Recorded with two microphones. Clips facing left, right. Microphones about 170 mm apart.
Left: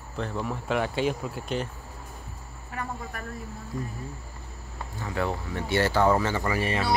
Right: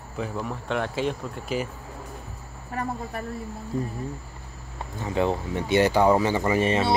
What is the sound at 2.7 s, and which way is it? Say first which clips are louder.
Speech: right 5 dB; 35° right (ahead or behind).